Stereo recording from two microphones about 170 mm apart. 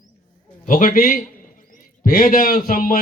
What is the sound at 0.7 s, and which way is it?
A man's voice, 50° left (ahead or behind).